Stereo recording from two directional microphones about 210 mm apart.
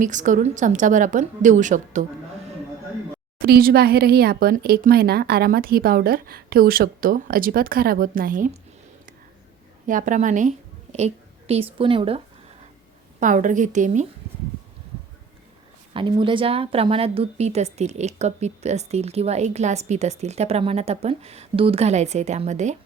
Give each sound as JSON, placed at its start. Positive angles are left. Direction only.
{"t": 0.0, "sound": "a woman's voice", "side_deg": -35}
{"t": 3.3, "sound": "speech", "side_deg": -45}
{"t": 9.8, "sound": "a woman's voice", "side_deg": -40}
{"t": 13.1, "sound": "a woman's voice", "side_deg": -35}
{"t": 15.9, "sound": "a woman's voice", "side_deg": -25}